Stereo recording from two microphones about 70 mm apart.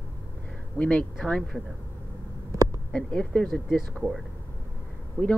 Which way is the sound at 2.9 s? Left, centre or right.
Centre.